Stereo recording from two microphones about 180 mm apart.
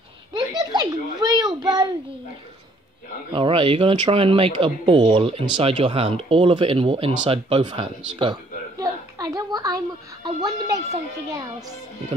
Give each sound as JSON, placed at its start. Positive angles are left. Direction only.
{"t": 0.5, "sound": "a child's voice", "side_deg": -20}
{"t": 3.3, "sound": "speech", "side_deg": -30}